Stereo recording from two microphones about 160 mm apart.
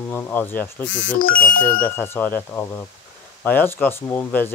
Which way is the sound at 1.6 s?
10° left (ahead or behind).